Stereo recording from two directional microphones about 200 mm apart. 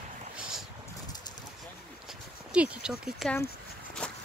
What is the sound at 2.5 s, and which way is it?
Speech, 5° right (ahead or behind).